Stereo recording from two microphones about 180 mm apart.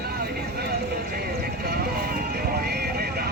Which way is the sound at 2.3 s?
60° right (ahead or behind).